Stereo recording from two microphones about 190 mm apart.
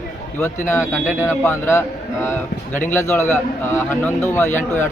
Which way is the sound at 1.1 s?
15° left (ahead or behind).